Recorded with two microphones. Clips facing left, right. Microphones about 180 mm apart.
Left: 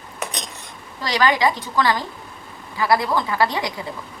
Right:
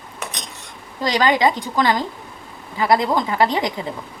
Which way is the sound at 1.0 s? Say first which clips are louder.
Right 2 dB; 20° right (ahead or behind).